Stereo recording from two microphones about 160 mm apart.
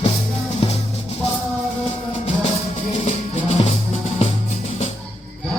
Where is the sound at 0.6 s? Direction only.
35° left (ahead or behind).